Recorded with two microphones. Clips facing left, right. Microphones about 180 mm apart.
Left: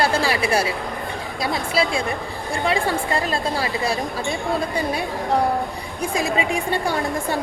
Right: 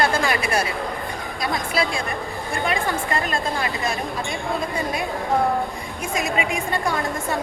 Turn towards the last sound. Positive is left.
turn(degrees=30)  # may be behind; listen again after turning